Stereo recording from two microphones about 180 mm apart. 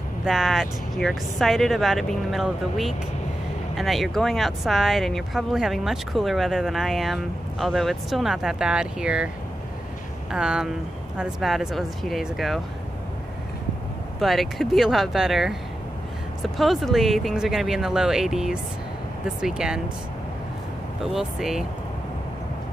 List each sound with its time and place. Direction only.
0.2 s speech: centre (ahead or behind)
10.3 s speech: 5° right (ahead or behind)
14.2 s speech: centre (ahead or behind)
16.5 s speech: centre (ahead or behind)
21.1 s speech: centre (ahead or behind)